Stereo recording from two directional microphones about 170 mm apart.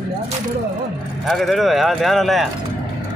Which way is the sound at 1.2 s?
Centre (ahead or behind).